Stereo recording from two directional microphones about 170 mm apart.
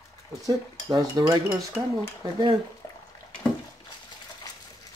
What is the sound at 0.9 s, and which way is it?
Dishes, 20° right (ahead or behind).